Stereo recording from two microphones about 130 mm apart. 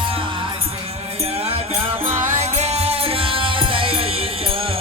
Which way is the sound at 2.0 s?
65° right (ahead or behind).